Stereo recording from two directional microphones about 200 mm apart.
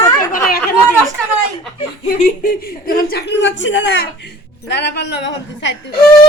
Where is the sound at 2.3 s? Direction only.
50° left (ahead or behind); by 6.0 s 65° left (ahead or behind).